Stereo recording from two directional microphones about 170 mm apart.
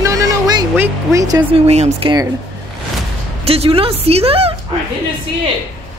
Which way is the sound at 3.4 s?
35° right (ahead or behind).